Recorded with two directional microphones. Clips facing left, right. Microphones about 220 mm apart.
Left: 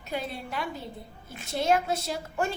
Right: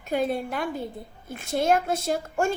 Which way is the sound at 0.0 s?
50° right (ahead or behind).